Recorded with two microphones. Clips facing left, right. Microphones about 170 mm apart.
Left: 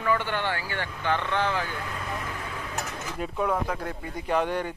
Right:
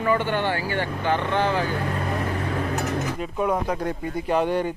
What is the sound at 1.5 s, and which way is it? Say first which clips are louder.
Vehicle: right 7 dB; 45° right (ahead or behind).